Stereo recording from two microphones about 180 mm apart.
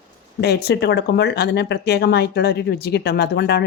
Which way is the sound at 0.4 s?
65° left (ahead or behind).